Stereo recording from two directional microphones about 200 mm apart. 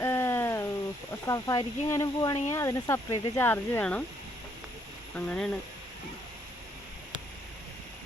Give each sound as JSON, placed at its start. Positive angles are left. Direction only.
{"t": 0.0, "sound": "a sound", "side_deg": 10}
{"t": 1.3, "sound": "speech", "side_deg": 15}
{"t": 5.1, "sound": "speech", "side_deg": 5}